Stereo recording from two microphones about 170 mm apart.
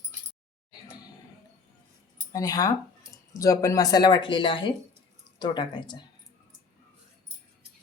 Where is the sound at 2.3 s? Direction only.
20° left (ahead or behind).